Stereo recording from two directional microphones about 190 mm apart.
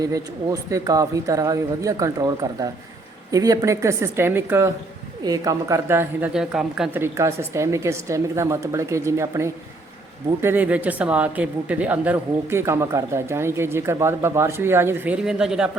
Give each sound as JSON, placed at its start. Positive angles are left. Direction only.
{"t": 0.7, "sound": "speech", "side_deg": -15}